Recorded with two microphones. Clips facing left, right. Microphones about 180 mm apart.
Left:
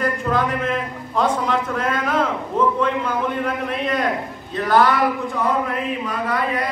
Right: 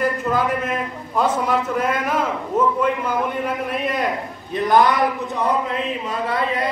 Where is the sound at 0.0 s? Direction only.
5° right (ahead or behind).